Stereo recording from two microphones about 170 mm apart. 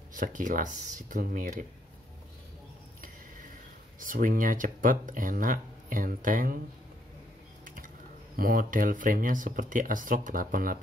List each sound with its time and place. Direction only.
0.1 s speech: 50° right (ahead or behind)
4.0 s speech: 50° right (ahead or behind)
8.4 s speech: 55° right (ahead or behind)